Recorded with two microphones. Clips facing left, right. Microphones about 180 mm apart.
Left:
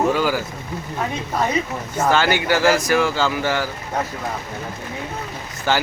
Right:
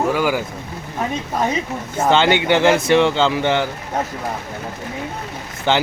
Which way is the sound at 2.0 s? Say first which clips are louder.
Right 3 dB; 20° right (ahead or behind).